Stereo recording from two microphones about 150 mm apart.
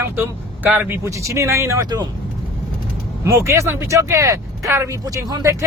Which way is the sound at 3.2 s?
20° right (ahead or behind).